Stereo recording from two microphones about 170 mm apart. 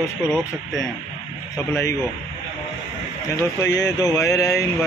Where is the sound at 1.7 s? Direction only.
15° left (ahead or behind).